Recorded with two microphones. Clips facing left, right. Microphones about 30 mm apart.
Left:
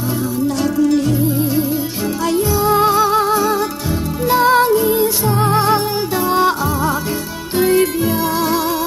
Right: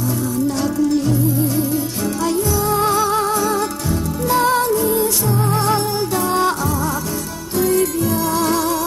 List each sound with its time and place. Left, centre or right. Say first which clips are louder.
0.7 s music: left 4 dB; centre
2.3 s music: left 6 dB; left
6.1 s music: left 3 dB; centre
7.5 s music: left 3 dB; left